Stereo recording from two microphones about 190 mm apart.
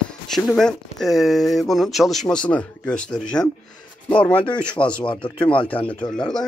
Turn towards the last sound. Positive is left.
turn(degrees=5)  # may be behind; listen again after turning